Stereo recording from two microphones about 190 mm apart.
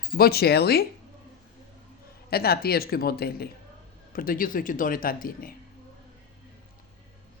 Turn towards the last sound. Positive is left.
turn(degrees=50)  # may be behind; listen again after turning